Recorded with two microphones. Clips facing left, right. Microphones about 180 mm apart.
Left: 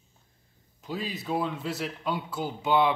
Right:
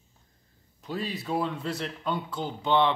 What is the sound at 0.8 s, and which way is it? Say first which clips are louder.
A man's voice: right 1 dB; centre (ahead or behind).